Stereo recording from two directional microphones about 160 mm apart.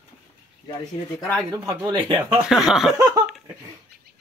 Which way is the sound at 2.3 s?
5° right (ahead or behind).